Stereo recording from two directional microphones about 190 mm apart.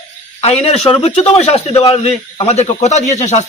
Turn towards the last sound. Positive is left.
turn(degrees=35)  # may be behind; listen again after turning